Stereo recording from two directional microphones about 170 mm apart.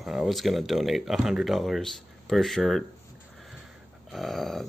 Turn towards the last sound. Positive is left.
turn(degrees=0)  # may be behind; listen again after turning